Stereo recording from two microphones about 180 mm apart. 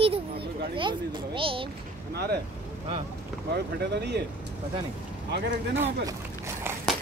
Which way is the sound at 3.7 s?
65° right (ahead or behind).